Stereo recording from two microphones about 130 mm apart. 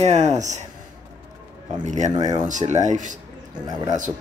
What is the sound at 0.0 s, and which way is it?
Speech, 60° right (ahead or behind).